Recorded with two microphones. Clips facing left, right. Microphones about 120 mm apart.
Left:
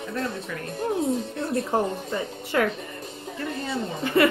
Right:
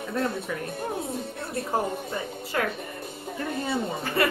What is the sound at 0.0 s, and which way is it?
Speech, 5° right (ahead or behind).